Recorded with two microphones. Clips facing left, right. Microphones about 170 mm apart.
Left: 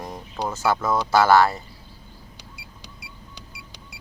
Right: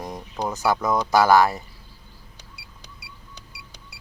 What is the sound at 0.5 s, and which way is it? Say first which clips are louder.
Speech: even; 15° right (ahead or behind).